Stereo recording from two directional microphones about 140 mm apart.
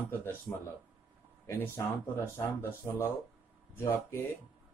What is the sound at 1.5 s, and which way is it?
Speech, 20° left (ahead or behind).